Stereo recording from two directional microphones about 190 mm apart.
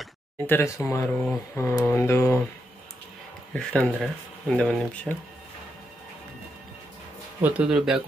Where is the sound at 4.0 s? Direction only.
5° left (ahead or behind).